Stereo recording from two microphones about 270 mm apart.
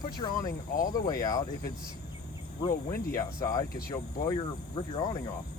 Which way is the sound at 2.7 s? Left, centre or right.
Left.